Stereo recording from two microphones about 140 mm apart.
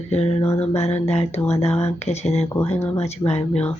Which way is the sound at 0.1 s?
45° left (ahead or behind).